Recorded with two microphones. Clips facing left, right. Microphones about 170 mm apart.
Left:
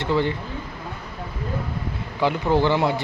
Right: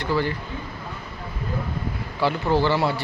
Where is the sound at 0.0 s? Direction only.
25° left (ahead or behind).